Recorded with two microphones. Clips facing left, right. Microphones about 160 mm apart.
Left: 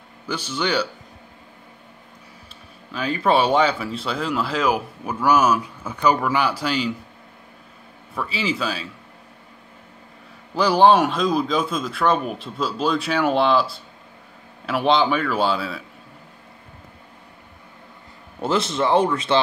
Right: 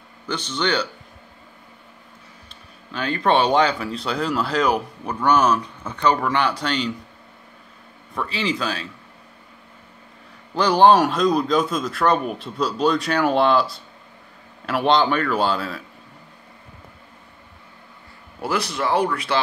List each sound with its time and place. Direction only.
0.3 s speech: 10° left (ahead or behind)
2.9 s speech: 5° left (ahead or behind)
8.1 s speech: 5° left (ahead or behind)
10.5 s speech: 5° left (ahead or behind)
18.4 s speech: 25° left (ahead or behind)